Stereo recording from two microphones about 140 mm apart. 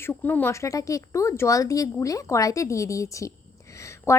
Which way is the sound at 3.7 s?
20° left (ahead or behind).